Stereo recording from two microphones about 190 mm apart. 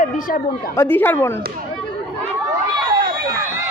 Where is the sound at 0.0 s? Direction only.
45° left (ahead or behind).